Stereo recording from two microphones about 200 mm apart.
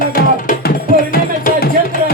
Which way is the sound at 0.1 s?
45° left (ahead or behind).